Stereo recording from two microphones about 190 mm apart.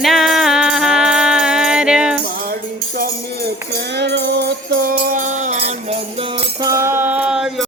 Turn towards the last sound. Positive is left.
turn(degrees=-5)  # may be behind; listen again after turning